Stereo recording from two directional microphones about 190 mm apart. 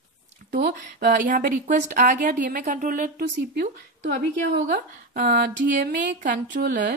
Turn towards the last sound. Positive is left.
turn(degrees=-50)  # may be behind; listen again after turning